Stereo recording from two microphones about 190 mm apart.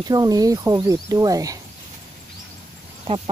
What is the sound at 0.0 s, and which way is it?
Speech, 20° right (ahead or behind).